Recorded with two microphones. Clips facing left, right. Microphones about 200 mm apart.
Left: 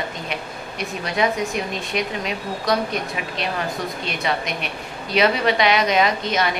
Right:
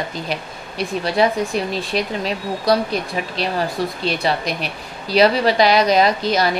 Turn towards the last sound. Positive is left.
turn(degrees=-35)  # may be behind; listen again after turning